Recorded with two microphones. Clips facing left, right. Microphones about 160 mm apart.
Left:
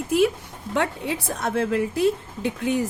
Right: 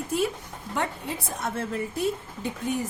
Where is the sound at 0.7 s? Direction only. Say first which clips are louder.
Left 5 dB; 90° left.